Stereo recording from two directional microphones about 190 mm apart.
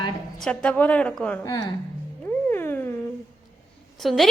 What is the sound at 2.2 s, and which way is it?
Cat, 10° left (ahead or behind).